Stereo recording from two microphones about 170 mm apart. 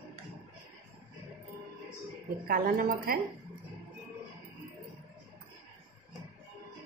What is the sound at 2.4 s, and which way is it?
Speech, 60° right (ahead or behind).